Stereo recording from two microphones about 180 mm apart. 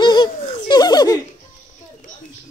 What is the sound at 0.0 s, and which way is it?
Laughter, 25° left (ahead or behind).